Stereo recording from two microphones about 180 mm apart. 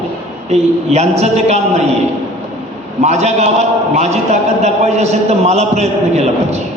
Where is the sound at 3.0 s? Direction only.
40° right (ahead or behind).